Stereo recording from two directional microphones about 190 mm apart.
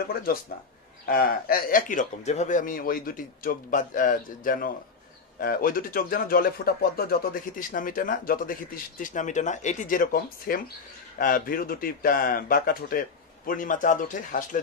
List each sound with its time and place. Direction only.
0.1 s speech: 50° left (ahead or behind)